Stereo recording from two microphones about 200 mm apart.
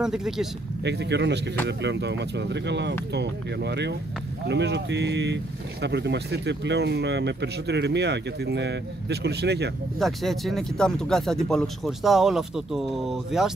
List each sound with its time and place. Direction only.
0.0 s speech: centre (ahead or behind)
0.8 s speech: 60° right (ahead or behind)
9.9 s speech: centre (ahead or behind)